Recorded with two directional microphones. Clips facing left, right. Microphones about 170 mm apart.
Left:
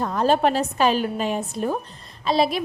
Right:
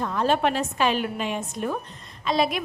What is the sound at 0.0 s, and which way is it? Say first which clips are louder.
A woman's voice: left 3 dB; 40° left (ahead or behind).